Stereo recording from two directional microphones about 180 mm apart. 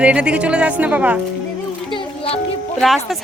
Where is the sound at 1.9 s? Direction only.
30° left (ahead or behind).